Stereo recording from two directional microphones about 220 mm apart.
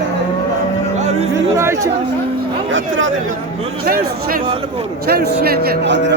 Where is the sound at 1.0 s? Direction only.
30° right (ahead or behind).